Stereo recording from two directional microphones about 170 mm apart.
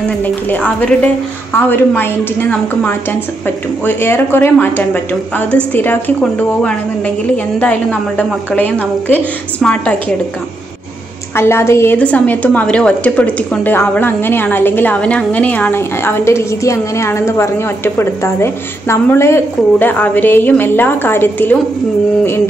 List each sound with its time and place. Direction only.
0.2 s a woman's voice: 10° left (ahead or behind)
11.3 s a woman's voice: 15° left (ahead or behind)